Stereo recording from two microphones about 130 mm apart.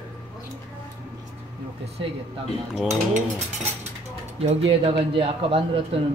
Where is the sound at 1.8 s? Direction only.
50° right (ahead or behind).